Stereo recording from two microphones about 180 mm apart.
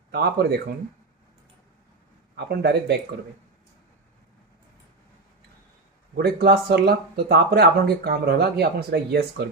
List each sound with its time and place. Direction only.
0.1 s speech: 60° right (ahead or behind)
2.3 s speech: 65° right (ahead or behind)
6.1 s speech: 60° right (ahead or behind)